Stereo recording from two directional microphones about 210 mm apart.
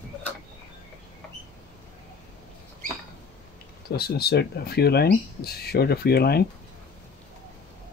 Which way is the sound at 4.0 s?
50° left (ahead or behind).